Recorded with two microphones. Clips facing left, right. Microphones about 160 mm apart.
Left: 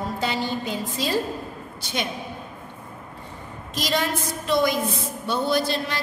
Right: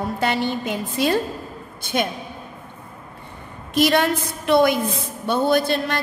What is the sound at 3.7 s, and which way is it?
A woman's voice, 60° right (ahead or behind).